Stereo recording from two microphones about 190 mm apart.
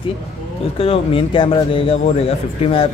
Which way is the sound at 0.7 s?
30° left (ahead or behind).